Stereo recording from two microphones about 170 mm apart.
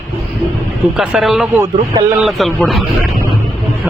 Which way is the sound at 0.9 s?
Centre (ahead or behind).